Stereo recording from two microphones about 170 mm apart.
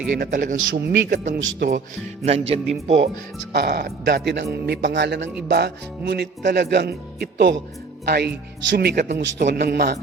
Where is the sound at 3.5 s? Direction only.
70° right (ahead or behind); by 5.3 s 90° right.